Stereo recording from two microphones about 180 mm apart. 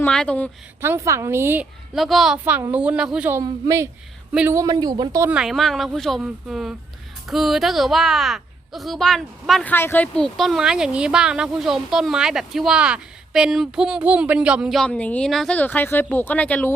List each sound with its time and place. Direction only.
0.0 s speech: 5° left (ahead or behind)
0.8 s a woman's voice: 15° right (ahead or behind)
2.0 s a woman's voice: centre (ahead or behind); by 3.8 s 15° right (ahead or behind)
4.3 s speech: 5° right (ahead or behind)
4.5 s speech: 20° right (ahead or behind)
5.3 s a woman's voice: centre (ahead or behind)